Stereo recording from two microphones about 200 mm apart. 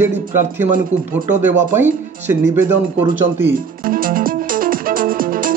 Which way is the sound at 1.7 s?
10° right (ahead or behind).